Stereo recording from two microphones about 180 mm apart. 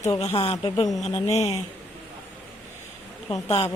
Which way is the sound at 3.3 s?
35° left (ahead or behind).